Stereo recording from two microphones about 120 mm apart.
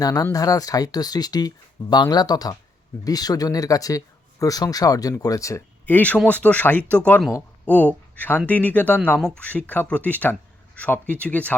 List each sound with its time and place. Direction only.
0.0 s speech: 30° left (ahead or behind)
5.8 s speech: 15° left (ahead or behind)